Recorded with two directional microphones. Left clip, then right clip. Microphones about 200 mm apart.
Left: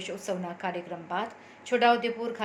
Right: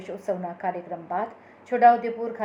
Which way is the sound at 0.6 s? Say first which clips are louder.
Right 5 dB; 45° left (ahead or behind).